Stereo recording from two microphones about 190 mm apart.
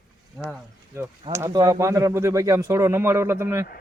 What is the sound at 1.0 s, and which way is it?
Speech, 15° right (ahead or behind).